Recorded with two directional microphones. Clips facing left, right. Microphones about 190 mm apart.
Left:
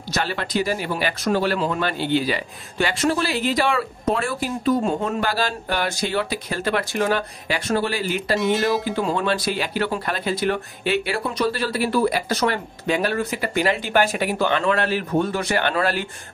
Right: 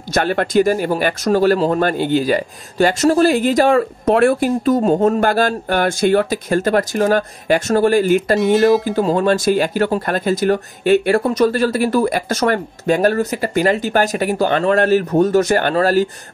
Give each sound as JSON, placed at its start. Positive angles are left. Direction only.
{"t": 0.1, "sound": "speech", "side_deg": -50}
{"t": 4.1, "sound": "speech", "side_deg": -55}
{"t": 8.4, "sound": "speech", "side_deg": 0}
{"t": 8.6, "sound": "speech", "side_deg": -45}